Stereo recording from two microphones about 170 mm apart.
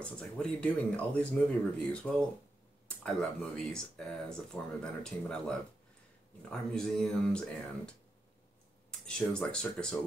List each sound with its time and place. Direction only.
0.0 s speech: 5° left (ahead or behind)
9.0 s speech: 5° left (ahead or behind)